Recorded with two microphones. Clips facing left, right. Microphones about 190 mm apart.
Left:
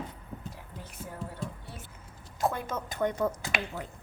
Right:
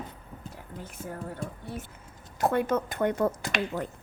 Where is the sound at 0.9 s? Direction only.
50° right (ahead or behind).